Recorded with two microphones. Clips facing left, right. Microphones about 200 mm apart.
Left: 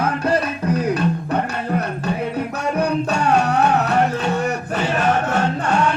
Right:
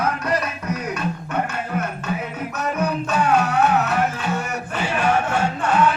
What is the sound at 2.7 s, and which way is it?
Music, 40° left (ahead or behind).